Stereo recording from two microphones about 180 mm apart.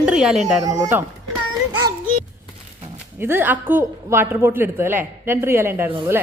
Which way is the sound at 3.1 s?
10° right (ahead or behind).